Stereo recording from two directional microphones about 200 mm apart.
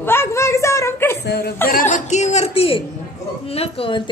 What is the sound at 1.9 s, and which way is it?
A man's voice, 35° left (ahead or behind).